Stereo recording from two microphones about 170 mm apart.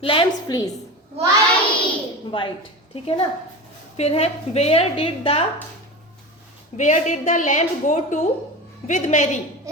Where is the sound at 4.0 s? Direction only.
40° left (ahead or behind).